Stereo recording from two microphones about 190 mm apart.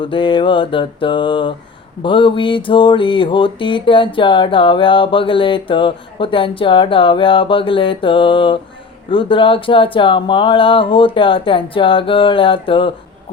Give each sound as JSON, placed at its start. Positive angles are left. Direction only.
{"t": 0.0, "sound": "mantra", "side_deg": 25}